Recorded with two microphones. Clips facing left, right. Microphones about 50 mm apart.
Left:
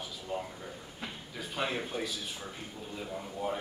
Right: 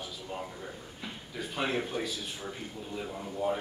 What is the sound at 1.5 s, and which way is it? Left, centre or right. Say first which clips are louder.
Speech: right 2 dB; centre.